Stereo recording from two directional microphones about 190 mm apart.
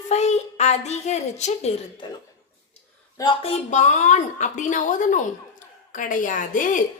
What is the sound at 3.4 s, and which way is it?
A woman's voice, 35° left (ahead or behind).